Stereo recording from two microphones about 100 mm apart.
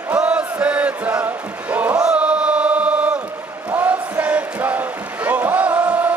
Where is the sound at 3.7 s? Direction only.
15° right (ahead or behind).